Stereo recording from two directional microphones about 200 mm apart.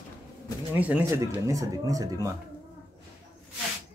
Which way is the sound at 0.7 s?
10° right (ahead or behind).